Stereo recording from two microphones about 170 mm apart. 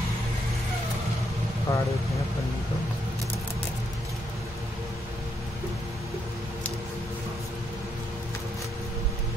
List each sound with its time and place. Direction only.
1.7 s speech: 20° left (ahead or behind)